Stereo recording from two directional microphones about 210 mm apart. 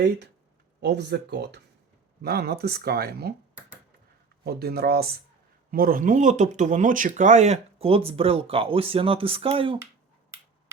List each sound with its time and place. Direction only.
0.8 s speech: 55° right (ahead or behind)
4.4 s speech: 45° right (ahead or behind); by 9.7 s 25° right (ahead or behind)